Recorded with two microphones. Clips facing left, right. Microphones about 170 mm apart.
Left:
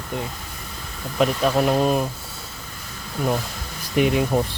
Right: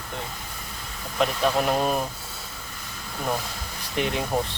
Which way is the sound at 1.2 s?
5° left (ahead or behind).